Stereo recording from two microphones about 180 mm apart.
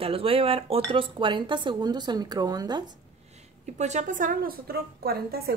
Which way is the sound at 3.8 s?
40° right (ahead or behind).